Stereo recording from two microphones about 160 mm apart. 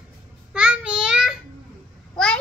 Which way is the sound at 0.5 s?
5° right (ahead or behind).